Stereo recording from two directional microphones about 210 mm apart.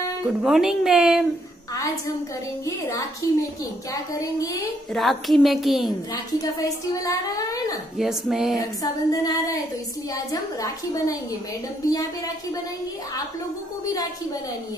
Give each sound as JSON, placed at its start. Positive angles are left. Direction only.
{"t": 0.2, "sound": "speech", "side_deg": 0}
{"t": 2.6, "sound": "a woman's voice", "side_deg": 15}
{"t": 4.9, "sound": "speech", "side_deg": 0}
{"t": 6.3, "sound": "a woman's voice", "side_deg": 15}
{"t": 8.0, "sound": "speech", "side_deg": 0}
{"t": 8.5, "sound": "a woman's voice", "side_deg": 15}